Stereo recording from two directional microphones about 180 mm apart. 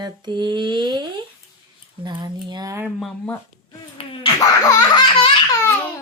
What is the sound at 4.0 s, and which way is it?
Laughter, 30° left (ahead or behind).